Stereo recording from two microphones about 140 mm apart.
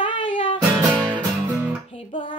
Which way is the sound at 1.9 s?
35° left (ahead or behind).